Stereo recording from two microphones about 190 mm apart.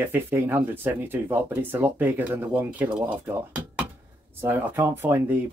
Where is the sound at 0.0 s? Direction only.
10° right (ahead or behind).